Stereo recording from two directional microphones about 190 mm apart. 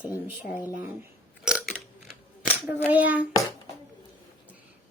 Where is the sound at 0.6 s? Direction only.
10° right (ahead or behind).